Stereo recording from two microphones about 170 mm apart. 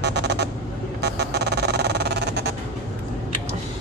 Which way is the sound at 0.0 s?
80° right.